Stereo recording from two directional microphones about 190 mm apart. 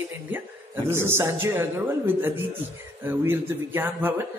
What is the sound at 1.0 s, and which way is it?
A man's voice, 15° right (ahead or behind).